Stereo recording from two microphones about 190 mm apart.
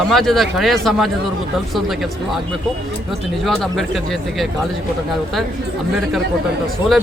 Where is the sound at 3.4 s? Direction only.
Centre (ahead or behind).